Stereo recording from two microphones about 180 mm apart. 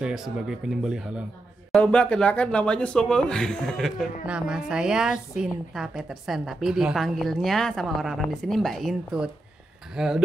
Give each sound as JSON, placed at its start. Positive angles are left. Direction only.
{"t": 0.0, "sound": "speech", "side_deg": -5}
{"t": 1.7, "sound": "speech", "side_deg": 5}